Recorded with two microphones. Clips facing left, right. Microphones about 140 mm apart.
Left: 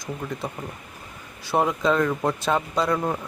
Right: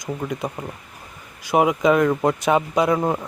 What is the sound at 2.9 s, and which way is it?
Speech, 30° right (ahead or behind).